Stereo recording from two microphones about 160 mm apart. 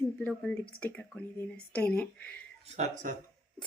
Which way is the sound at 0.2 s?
10° left (ahead or behind).